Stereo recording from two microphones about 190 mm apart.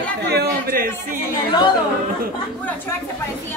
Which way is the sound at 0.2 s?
60° right (ahead or behind).